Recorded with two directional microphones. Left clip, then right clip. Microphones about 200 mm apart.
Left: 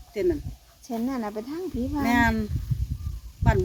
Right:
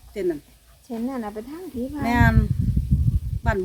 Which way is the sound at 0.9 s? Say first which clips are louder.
Even; 50° left (ahead or behind).